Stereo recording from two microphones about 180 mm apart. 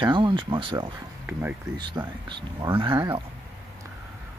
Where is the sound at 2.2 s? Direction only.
30° right (ahead or behind).